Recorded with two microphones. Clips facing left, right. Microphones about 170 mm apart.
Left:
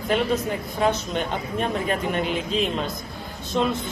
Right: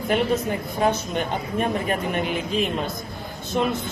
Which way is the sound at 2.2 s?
55° right (ahead or behind).